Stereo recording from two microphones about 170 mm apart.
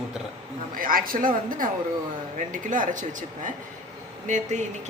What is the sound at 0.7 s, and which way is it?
A man's voice, 55° right (ahead or behind).